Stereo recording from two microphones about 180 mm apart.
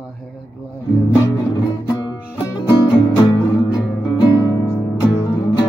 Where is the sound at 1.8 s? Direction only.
20° left (ahead or behind).